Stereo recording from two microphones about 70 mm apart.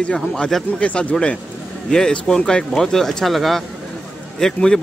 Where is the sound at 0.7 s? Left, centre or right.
Centre.